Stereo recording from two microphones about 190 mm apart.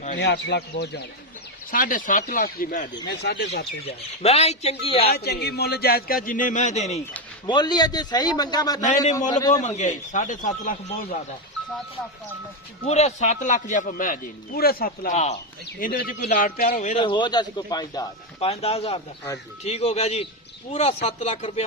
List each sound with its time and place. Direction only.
0.2 s speech: 65° left (ahead or behind)
1.7 s a man's voice: 45° left (ahead or behind)
3.1 s speech: 60° left (ahead or behind)
3.8 s a man's voice: 35° left (ahead or behind)
5.0 s a man's voice: 55° left (ahead or behind); by 7.0 s 35° left (ahead or behind)
7.4 s a man's voice: 20° left (ahead or behind)
9.5 s a man's voice: 40° left (ahead or behind)
12.8 s a man's voice: 35° left (ahead or behind)
15.8 s a man's voice: 50° left (ahead or behind)
17.0 s a man's voice: 25° left (ahead or behind)
18.3 s a man's voice: 30° left (ahead or behind)